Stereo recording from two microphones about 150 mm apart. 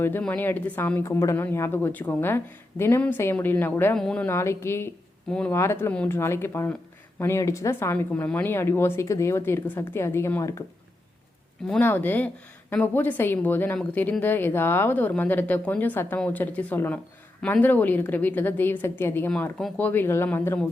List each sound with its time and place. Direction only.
0.0 s speech: 15° left (ahead or behind)
5.3 s speech: 5° left (ahead or behind)
11.7 s speech: 15° left (ahead or behind)